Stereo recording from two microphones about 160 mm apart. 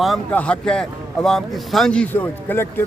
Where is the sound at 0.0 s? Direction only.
5° left (ahead or behind).